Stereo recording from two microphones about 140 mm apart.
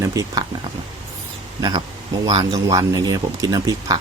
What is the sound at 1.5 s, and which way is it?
Speech, 30° right (ahead or behind).